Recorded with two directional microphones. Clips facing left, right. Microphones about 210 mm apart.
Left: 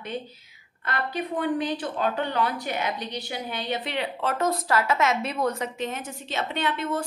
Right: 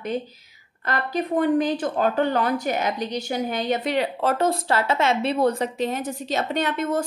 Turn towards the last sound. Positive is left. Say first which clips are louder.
# right 4 dB
turn(degrees=-45)  # may be behind; listen again after turning